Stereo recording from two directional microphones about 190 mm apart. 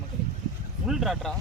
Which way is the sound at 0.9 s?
Centre (ahead or behind).